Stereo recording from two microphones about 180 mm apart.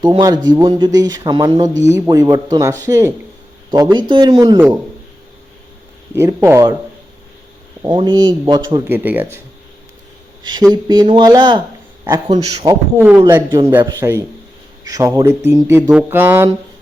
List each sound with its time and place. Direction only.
0.0 s speech: 25° right (ahead or behind)
4.1 s speech: 20° right (ahead or behind)
4.5 s speech: 10° right (ahead or behind)
6.1 s speech: 15° right (ahead or behind)
7.8 s speech: 25° right (ahead or behind)
8.9 s speech: 10° right (ahead or behind)
10.4 s speech: 20° right (ahead or behind)
13.0 s speech: 10° right (ahead or behind)